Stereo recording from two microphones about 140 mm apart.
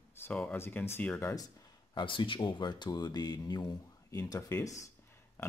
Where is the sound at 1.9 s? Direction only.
35° left (ahead or behind).